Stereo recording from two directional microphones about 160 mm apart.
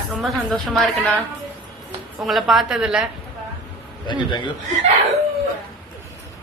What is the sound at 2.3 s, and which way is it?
Speech, centre (ahead or behind).